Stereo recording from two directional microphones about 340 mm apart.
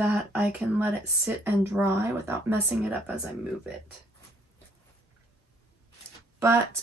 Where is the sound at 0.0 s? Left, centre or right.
Centre.